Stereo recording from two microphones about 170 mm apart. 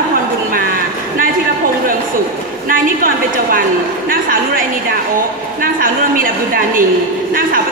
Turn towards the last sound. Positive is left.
turn(degrees=-55)  # may be behind; listen again after turning